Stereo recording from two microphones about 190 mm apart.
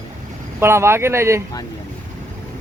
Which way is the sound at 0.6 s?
15° right (ahead or behind).